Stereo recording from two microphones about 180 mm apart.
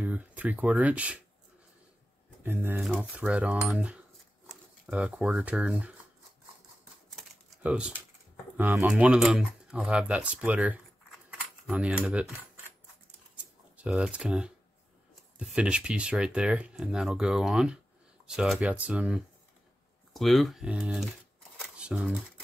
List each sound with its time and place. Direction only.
0.0 s speech: 10° right (ahead or behind)
2.4 s speech: 10° right (ahead or behind)
7.1 s typewriter: centre (ahead or behind)
8.5 s speech: 10° right (ahead or behind)
11.2 s a sound: 5° right (ahead or behind)
13.7 s speech: 5° right (ahead or behind)